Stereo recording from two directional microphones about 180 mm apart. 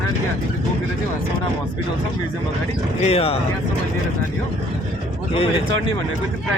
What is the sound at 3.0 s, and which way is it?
Speech, 35° left (ahead or behind).